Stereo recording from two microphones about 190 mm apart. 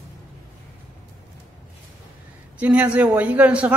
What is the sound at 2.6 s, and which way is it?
A woman's voice, 5° right (ahead or behind).